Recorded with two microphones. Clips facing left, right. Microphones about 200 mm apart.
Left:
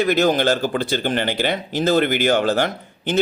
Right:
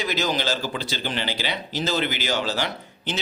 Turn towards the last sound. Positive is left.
turn(degrees=50)  # may be behind; listen again after turning